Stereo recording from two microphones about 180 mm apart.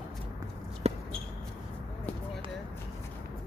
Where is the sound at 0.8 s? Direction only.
35° right (ahead or behind).